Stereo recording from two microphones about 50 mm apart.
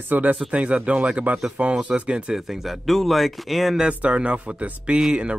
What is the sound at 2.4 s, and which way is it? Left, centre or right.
A man's voice, centre.